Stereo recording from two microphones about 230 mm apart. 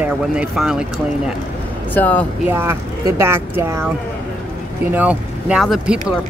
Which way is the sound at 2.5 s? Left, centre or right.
Centre.